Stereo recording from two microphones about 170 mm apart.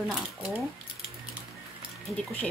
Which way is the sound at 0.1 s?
5° right (ahead or behind).